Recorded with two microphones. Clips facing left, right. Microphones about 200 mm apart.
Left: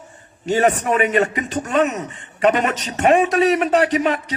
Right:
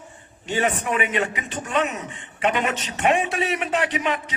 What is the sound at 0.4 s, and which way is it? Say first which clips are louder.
A man's voice: left 6 dB; 40° left (ahead or behind).